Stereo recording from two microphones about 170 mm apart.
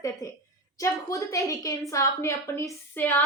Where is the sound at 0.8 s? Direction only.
20° left (ahead or behind).